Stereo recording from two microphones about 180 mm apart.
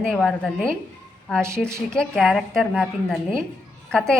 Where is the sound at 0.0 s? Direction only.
5° left (ahead or behind).